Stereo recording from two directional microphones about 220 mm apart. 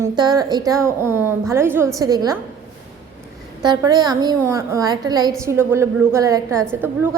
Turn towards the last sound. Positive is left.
turn(degrees=-10)  # may be behind; listen again after turning